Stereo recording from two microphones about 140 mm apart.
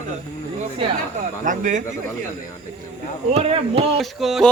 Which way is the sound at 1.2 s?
65° right (ahead or behind).